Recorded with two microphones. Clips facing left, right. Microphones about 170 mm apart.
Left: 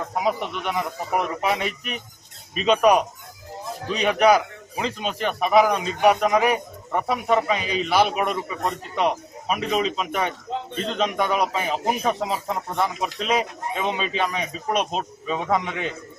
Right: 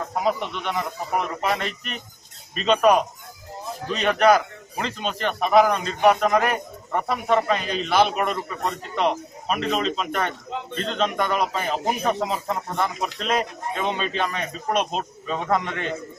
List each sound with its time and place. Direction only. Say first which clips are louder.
0.2 s a man's voice: even; 5° left (ahead or behind)